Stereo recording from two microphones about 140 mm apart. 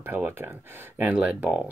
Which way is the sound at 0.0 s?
15° right (ahead or behind).